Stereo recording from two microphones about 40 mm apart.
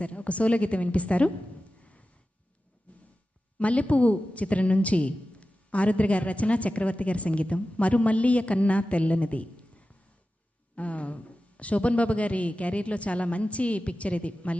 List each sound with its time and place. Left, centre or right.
0.0 s a woman's voice: left
2.9 s a sound: left
3.6 s a woman's voice: left
10.8 s a woman's voice: left